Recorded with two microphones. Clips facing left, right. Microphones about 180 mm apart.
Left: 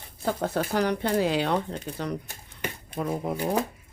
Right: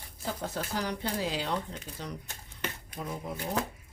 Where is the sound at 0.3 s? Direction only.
60° left (ahead or behind).